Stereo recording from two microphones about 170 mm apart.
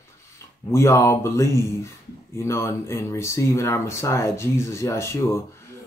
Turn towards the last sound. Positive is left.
turn(degrees=15)  # may be behind; listen again after turning